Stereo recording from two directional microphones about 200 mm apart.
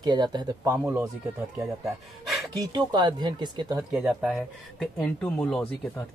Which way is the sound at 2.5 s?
20° right (ahead or behind).